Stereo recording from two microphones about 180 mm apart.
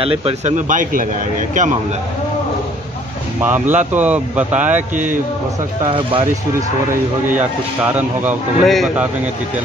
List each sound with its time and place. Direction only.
0.0 s a man's voice: 35° right (ahead or behind)
3.3 s speech: 10° right (ahead or behind)
4.9 s a man's voice: 45° right (ahead or behind)
5.9 s speech: 30° right (ahead or behind)
7.2 s speech: 10° right (ahead or behind)